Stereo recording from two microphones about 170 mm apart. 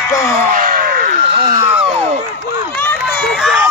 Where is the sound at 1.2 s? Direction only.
30° right (ahead or behind).